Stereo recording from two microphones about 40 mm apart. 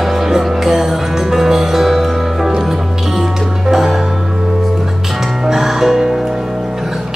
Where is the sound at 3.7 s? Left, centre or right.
Centre.